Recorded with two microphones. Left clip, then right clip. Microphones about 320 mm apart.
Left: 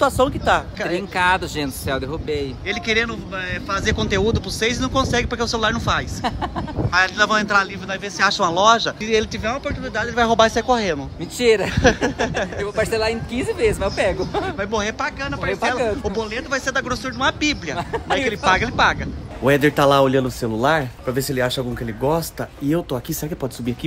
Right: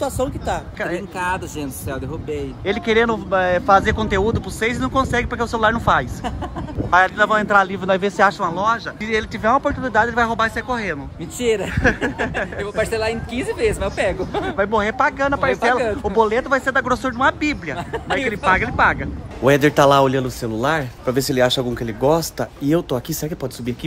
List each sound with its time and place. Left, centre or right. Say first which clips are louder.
0.2 s speech: left 5 dB; left
0.7 s speech: left 1 dB; centre
2.2 s speech: even; centre
8.3 s speech: left 4 dB; centre